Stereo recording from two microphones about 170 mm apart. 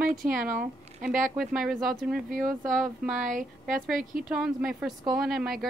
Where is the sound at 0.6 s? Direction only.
5° right (ahead or behind).